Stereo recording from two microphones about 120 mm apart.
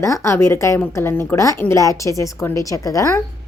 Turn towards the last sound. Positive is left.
turn(degrees=30)  # may be behind; listen again after turning